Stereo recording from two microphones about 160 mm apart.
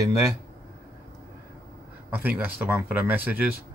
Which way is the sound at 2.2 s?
10° right (ahead or behind).